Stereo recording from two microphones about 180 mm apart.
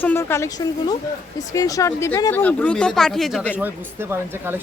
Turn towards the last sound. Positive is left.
turn(degrees=0)  # may be behind; listen again after turning